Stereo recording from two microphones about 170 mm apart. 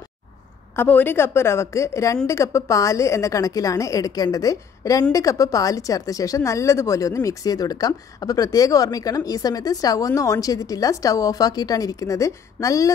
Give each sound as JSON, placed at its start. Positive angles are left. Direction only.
{"t": 0.7, "sound": "a woman's voice", "side_deg": 10}